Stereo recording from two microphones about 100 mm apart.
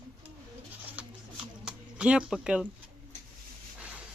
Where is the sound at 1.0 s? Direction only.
15° right (ahead or behind).